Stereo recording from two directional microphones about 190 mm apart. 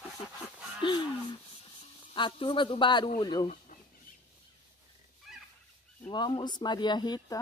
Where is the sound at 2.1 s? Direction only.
25° left (ahead or behind).